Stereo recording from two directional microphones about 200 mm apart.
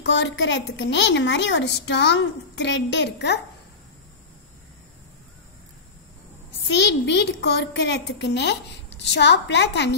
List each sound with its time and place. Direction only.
0.0 s a child's voice: 65° left (ahead or behind)
6.7 s a child's voice: 60° left (ahead or behind)